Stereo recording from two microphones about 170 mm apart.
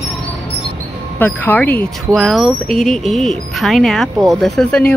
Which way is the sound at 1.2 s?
10° left (ahead or behind).